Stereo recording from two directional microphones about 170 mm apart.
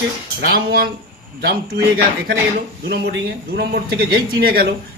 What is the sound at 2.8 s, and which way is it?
A man's voice, 80° right.